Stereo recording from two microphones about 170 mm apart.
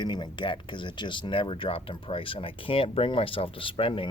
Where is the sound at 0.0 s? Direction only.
25° left (ahead or behind).